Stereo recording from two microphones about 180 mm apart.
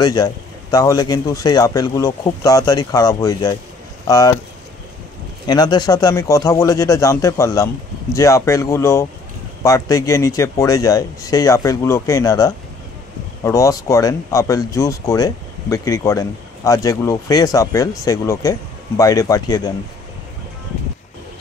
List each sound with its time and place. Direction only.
0.0 s speech: 20° left (ahead or behind)
5.5 s speech: 20° left (ahead or behind)